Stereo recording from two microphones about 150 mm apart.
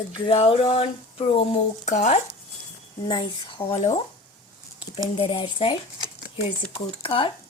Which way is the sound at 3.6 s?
40° left (ahead or behind).